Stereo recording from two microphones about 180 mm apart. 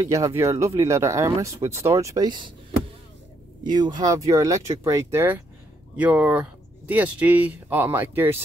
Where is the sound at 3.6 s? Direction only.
25° right (ahead or behind).